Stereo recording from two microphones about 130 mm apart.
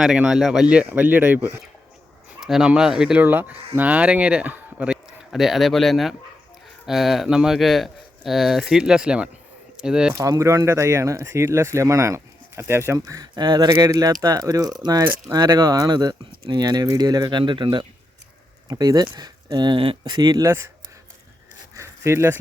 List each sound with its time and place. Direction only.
0.0 s speech: 5° right (ahead or behind)
10.2 s speech: 25° right (ahead or behind)
21.8 s a sound: 20° right (ahead or behind)